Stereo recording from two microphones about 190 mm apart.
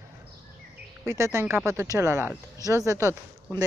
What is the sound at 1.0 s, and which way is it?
Speech, 15° right (ahead or behind).